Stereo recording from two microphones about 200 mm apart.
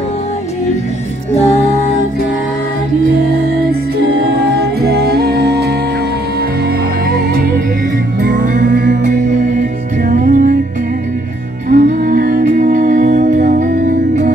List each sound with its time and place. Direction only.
1.3 s music: 35° left (ahead or behind)
4.6 s music: 50° right (ahead or behind)
7.2 s music: 50° right (ahead or behind)
11.7 s music: 40° right (ahead or behind)